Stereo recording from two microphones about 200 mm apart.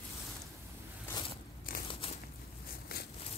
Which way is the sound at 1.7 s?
45° left (ahead or behind).